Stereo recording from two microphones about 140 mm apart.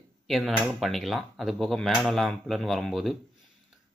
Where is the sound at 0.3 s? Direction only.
Centre (ahead or behind).